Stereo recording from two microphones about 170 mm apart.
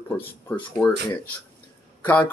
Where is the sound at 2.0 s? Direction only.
10° left (ahead or behind).